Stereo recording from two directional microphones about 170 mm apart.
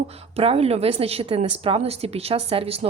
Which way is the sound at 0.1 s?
35° right (ahead or behind).